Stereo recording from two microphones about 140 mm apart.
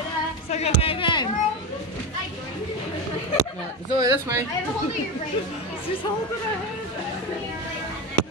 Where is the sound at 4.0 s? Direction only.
20° right (ahead or behind).